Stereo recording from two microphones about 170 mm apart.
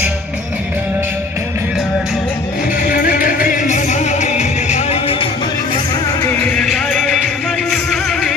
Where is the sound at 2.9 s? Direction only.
55° left (ahead or behind); by 5.3 s 35° left (ahead or behind).